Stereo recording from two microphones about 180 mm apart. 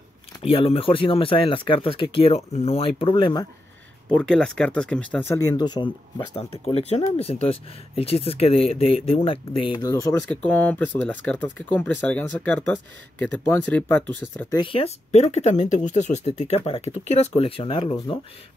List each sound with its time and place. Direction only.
0.4 s speech: 30° left (ahead or behind)
4.1 s speech: 5° left (ahead or behind)
5.3 s speech: 20° left (ahead or behind)
10.3 s speech: 10° left (ahead or behind)
14.5 s speech: 30° left (ahead or behind)